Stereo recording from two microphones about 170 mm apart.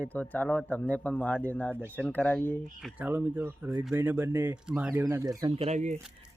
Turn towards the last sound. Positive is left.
turn(degrees=-45)  # may be behind; listen again after turning